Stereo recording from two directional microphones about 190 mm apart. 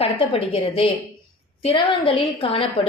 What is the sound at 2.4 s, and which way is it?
Speech, 30° left (ahead or behind).